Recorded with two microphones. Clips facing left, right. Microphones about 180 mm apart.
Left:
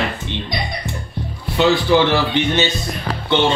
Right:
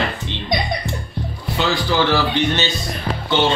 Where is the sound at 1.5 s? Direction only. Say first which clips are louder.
Left 5 dB; 20° left (ahead or behind).